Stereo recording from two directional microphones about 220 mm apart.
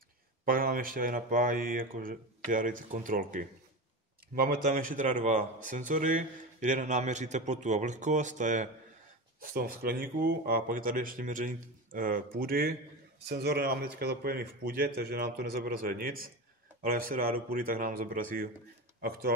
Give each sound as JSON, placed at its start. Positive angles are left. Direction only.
{"t": 0.5, "sound": "a man's voice", "side_deg": -40}